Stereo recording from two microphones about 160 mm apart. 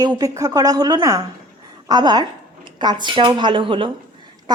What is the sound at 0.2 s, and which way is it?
Speech, 20° right (ahead or behind).